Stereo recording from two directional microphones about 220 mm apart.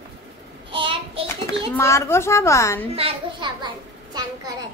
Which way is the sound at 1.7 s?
15° left (ahead or behind).